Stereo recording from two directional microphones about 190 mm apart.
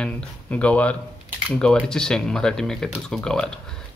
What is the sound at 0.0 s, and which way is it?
Speech, 5° left (ahead or behind).